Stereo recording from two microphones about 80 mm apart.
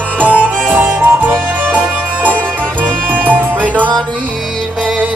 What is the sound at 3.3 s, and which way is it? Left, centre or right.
Music, centre.